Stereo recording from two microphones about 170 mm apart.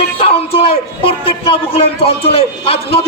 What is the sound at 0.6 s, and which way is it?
A man's voice, 30° left (ahead or behind).